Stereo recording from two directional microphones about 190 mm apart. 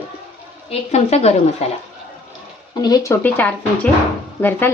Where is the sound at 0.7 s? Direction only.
35° left (ahead or behind).